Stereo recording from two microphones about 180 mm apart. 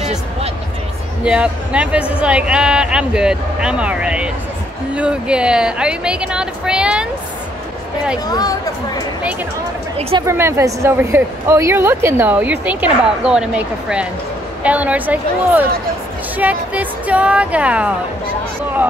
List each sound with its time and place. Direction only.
1.2 s speech: 5° right (ahead or behind)
8.3 s speech: 20° left (ahead or behind)
9.9 s speech: 30° right (ahead or behind)
10.2 s a woman's voice: 15° right (ahead or behind)